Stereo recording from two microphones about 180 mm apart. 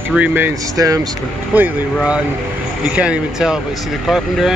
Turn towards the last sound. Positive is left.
turn(degrees=0)  # may be behind; listen again after turning